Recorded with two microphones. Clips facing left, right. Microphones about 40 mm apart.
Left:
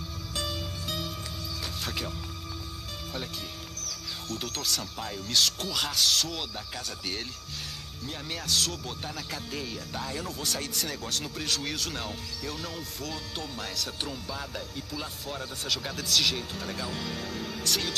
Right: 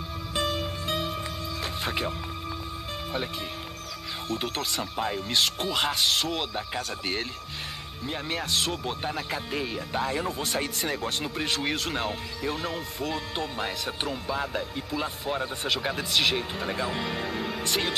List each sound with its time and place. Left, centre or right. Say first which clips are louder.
0.3 s music: right 6 dB; right
4.3 s speech: right 3 dB; right